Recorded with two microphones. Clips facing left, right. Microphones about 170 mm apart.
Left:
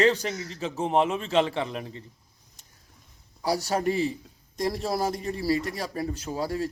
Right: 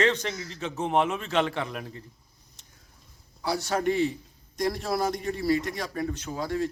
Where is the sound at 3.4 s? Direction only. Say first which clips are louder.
Left 1 dB; 35° left (ahead or behind).